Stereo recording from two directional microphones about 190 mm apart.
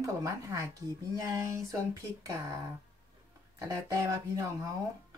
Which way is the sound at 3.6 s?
15° right (ahead or behind).